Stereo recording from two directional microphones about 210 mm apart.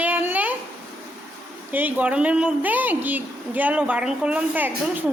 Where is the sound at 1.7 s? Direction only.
5° right (ahead or behind).